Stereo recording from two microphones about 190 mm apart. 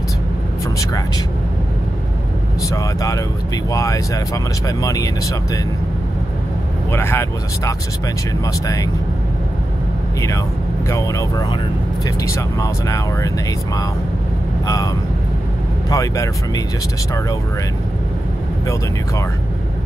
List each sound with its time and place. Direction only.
0.7 s music: 20° left (ahead or behind)
2.7 s speech: 15° left (ahead or behind)
6.9 s speech: 10° left (ahead or behind)
10.9 s speech: 15° left (ahead or behind)
15.9 s speech: 15° left (ahead or behind)